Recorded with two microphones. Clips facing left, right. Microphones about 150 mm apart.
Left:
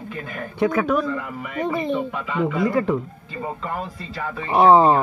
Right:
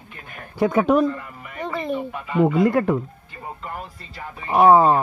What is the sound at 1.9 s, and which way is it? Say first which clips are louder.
Speech: left 2 dB; 90° left.